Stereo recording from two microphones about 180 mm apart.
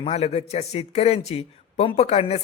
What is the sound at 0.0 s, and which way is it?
A man's voice, 35° left (ahead or behind).